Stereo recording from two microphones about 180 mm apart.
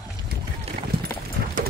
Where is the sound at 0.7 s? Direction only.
35° right (ahead or behind).